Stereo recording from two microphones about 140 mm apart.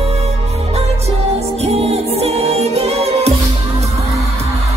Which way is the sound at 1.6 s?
45° right (ahead or behind).